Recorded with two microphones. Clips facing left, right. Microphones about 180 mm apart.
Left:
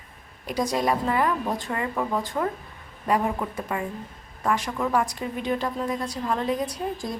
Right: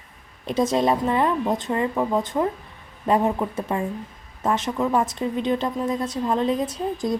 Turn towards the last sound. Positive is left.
turn(degrees=-20)  # may be behind; listen again after turning